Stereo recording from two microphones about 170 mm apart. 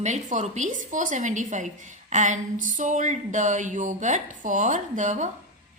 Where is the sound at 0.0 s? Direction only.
45° right (ahead or behind).